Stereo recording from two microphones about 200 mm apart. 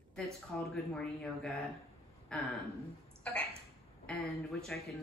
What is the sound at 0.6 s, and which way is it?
A woman's voice, centre (ahead or behind).